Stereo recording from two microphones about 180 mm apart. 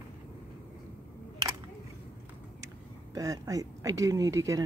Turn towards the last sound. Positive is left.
turn(degrees=-15)  # may be behind; listen again after turning